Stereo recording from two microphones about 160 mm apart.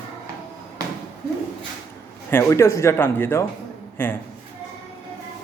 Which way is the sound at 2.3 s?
15° left (ahead or behind).